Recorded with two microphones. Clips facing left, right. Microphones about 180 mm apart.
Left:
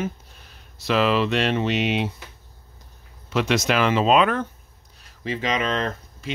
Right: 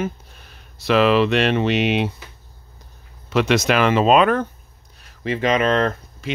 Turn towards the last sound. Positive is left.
turn(degrees=-65)  # may be behind; listen again after turning